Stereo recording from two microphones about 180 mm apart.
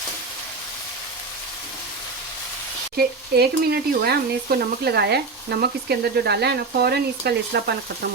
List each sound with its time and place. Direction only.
2.9 s speech: 60° right (ahead or behind)